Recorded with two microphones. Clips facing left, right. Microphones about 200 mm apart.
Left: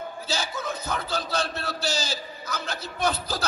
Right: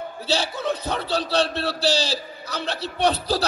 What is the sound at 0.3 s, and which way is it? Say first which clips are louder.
A man's voice: right 7 dB; 35° right (ahead or behind).